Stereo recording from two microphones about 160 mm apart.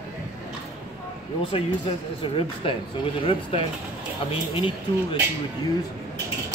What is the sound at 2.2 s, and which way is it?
Speech, 35° left (ahead or behind).